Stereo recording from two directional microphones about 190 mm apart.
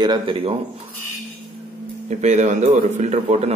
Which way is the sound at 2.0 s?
35° right (ahead or behind).